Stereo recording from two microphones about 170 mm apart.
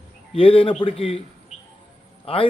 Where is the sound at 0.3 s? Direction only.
30° left (ahead or behind).